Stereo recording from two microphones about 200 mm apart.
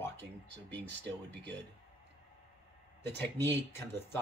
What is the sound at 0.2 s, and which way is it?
Speech, 60° right (ahead or behind).